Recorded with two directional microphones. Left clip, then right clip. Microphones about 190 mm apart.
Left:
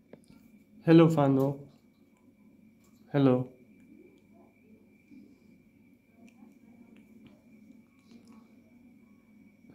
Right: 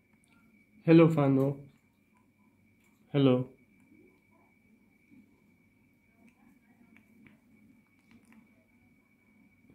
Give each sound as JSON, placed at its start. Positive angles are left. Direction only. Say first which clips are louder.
{"t": 0.7, "sound": "a man's voice", "louder": "left 1 dB", "side_deg": -10}
{"t": 3.1, "sound": "speech", "louder": "left 1 dB", "side_deg": -10}